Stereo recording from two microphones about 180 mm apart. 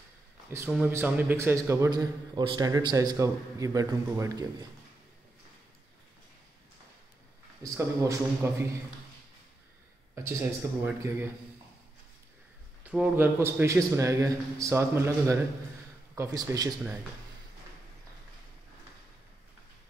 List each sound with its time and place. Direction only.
0.7 s a man's voice: 5° right (ahead or behind); by 4.5 s 20° right (ahead or behind)
7.7 s a man's voice: 15° right (ahead or behind)
10.1 s a man's voice: 10° right (ahead or behind)
12.8 s a man's voice: 5° right (ahead or behind)